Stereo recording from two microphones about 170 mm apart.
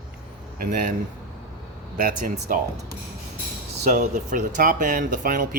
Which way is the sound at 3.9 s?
50° right (ahead or behind).